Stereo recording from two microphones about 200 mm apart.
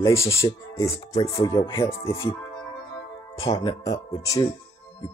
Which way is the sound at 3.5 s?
20° left (ahead or behind).